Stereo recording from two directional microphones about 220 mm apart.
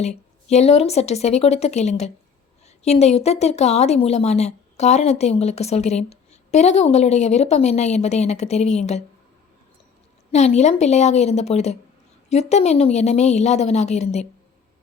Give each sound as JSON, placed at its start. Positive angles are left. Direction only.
{"t": 0.0, "sound": "a woman's voice", "side_deg": 30}
{"t": 10.3, "sound": "a woman's voice", "side_deg": 30}